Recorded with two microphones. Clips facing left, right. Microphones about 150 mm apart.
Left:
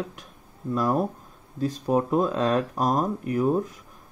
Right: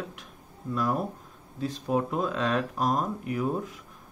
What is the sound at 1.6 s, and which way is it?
Speech, 40° left (ahead or behind).